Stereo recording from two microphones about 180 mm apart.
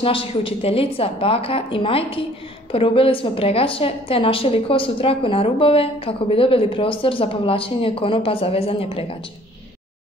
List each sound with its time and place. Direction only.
0.0 s a woman's voice: 30° left (ahead or behind)